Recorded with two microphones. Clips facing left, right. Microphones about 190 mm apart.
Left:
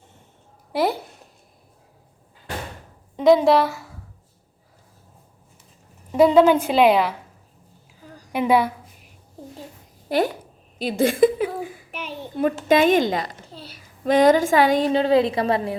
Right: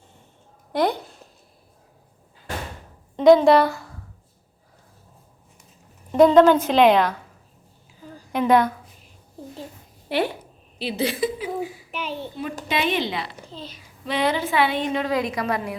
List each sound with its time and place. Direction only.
0.7 s speech: 5° left (ahead or behind)
3.2 s a woman's voice: centre (ahead or behind)
6.1 s a woman's voice: 5° left (ahead or behind)
8.3 s a woman's voice: 10° left (ahead or behind)
10.1 s a woman's voice: 40° left (ahead or behind)
13.5 s a child's voice: 10° left (ahead or behind)
14.0 s a woman's voice: 45° left (ahead or behind); by 15.8 s 30° left (ahead or behind)